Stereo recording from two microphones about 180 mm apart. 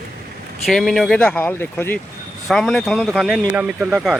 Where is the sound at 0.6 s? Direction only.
Centre (ahead or behind).